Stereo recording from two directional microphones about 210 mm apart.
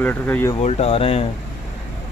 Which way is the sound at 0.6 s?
30° left (ahead or behind).